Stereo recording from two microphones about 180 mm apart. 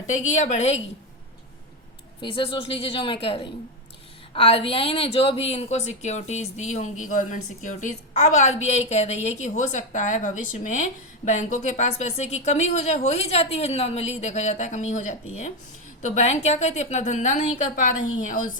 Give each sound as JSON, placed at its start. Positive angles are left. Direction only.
{"t": 0.1, "sound": "a woman's voice", "side_deg": 40}
{"t": 2.2, "sound": "a woman's voice", "side_deg": 30}